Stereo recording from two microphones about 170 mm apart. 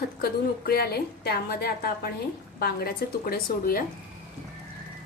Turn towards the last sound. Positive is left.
turn(degrees=60)  # may be behind; listen again after turning